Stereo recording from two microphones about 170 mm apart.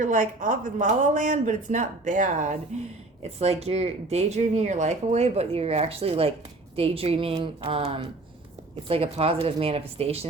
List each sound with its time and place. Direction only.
0.0 s speech: 50° right (ahead or behind)